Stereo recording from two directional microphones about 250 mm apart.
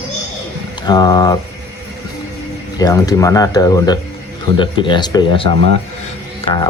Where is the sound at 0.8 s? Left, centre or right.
Centre.